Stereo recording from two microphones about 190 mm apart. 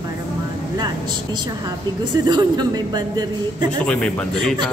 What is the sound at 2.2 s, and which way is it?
A man's voice, 20° right (ahead or behind).